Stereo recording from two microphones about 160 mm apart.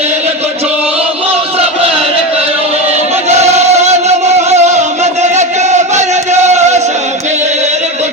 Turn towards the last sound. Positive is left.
turn(degrees=-45)  # may be behind; listen again after turning